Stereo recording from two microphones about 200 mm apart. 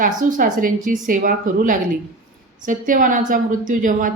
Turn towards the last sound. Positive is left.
turn(degrees=-40)  # may be behind; listen again after turning